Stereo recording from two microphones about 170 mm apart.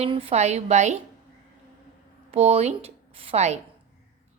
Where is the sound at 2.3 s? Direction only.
40° right (ahead or behind).